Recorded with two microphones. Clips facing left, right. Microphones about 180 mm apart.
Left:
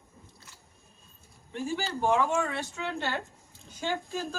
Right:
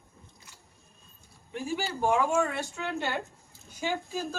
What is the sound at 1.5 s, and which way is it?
A woman's voice, 10° right (ahead or behind).